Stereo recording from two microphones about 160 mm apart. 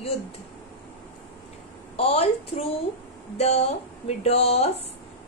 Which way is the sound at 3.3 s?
40° left (ahead or behind).